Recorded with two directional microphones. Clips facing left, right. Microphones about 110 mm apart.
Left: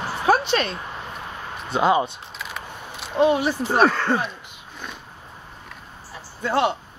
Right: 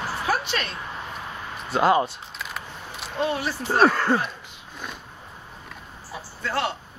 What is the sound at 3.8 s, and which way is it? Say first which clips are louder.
Speech: even; 5° right (ahead or behind).